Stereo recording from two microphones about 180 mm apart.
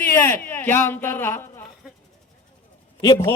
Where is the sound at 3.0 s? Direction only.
20° left (ahead or behind).